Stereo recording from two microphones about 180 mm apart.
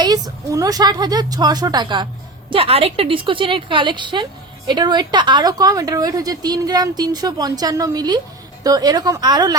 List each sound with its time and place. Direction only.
0.0 s a woman's voice: 20° right (ahead or behind)